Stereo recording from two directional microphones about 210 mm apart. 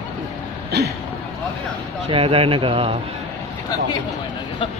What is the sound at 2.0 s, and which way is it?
Speech, 25° right (ahead or behind).